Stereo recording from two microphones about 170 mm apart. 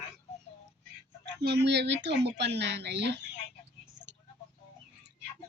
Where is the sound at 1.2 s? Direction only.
75° right (ahead or behind).